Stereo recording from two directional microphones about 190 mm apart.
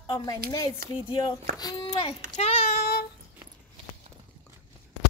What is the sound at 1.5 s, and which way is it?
Speech, 25° left (ahead or behind).